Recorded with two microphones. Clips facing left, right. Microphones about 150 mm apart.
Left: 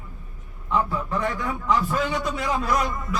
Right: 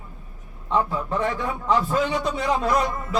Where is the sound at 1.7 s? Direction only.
30° right (ahead or behind).